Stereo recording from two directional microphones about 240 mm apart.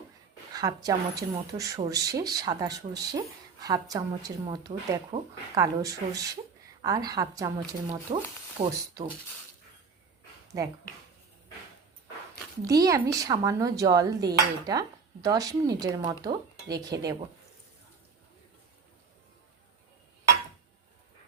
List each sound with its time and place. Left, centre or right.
0.5 s dishes: centre
8.1 s speech: right
12.6 s dishes: centre